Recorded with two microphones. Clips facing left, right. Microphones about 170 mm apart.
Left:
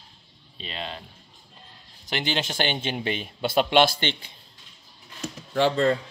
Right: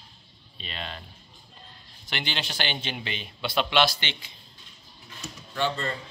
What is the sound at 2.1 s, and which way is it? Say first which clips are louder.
Speech: left 6 dB; 40° left (ahead or behind).